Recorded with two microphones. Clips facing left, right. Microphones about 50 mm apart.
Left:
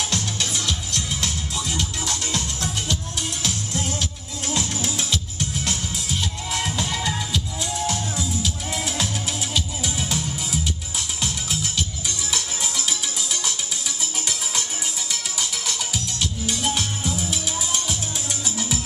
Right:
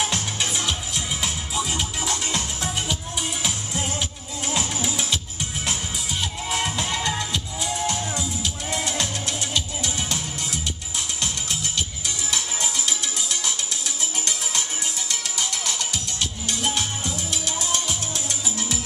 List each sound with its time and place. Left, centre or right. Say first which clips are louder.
0.0 s music: right 1 dB; centre
6.0 s music: right 1 dB; centre
12.8 s music: even; centre
15.0 s music: right 1 dB; centre